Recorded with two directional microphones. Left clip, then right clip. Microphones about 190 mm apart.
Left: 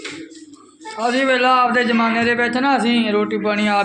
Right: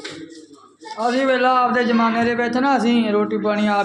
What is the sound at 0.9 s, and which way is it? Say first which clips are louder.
A man's voice: left 1 dB; centre (ahead or behind).